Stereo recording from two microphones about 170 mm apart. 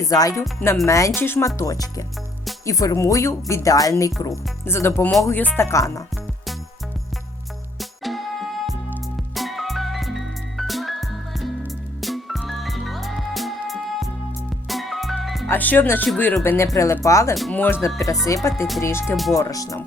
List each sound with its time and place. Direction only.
0.0 s speech: 20° left (ahead or behind)
7.8 s music: centre (ahead or behind)
15.4 s speech: 10° left (ahead or behind)
17.3 s speech: centre (ahead or behind)
17.8 s speech: 15° left (ahead or behind)